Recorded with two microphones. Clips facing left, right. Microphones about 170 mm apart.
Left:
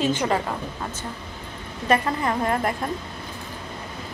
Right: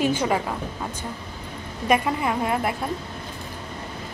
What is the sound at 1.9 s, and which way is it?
Speech, 10° right (ahead or behind).